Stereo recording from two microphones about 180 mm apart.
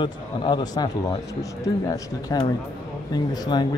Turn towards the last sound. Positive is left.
turn(degrees=25)  # may be behind; listen again after turning